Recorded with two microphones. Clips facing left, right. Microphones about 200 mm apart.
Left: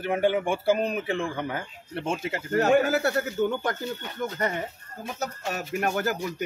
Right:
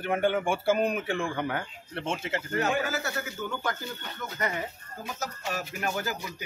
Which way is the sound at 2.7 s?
60° left (ahead or behind).